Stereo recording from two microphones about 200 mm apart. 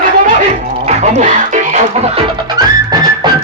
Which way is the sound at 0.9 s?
35° right (ahead or behind).